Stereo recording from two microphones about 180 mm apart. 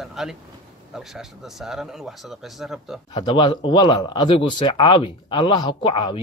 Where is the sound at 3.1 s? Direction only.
25° left (ahead or behind).